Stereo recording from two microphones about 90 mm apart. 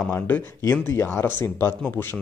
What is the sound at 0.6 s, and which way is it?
Speech, 30° left (ahead or behind).